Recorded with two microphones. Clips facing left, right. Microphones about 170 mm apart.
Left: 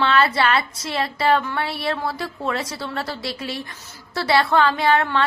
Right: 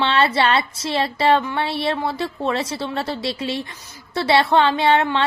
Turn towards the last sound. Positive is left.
turn(degrees=-25)  # may be behind; listen again after turning